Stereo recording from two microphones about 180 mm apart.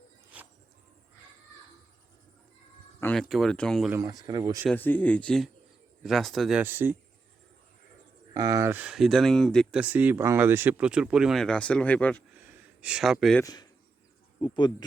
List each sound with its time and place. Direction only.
3.0 s speech: 5° left (ahead or behind)
3.8 s speech: 20° right (ahead or behind)
4.7 s speech: 10° left (ahead or behind)
6.6 s speech: 10° right (ahead or behind)
8.3 s speech: 20° right (ahead or behind); by 9.8 s 5° left (ahead or behind)
9.8 s speech: 10° right (ahead or behind); by 12.2 s 10° left (ahead or behind)
12.4 s gasp: 10° right (ahead or behind)
13.4 s speech: 20° left (ahead or behind)